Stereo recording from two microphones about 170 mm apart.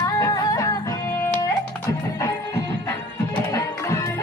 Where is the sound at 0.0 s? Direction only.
20° left (ahead or behind).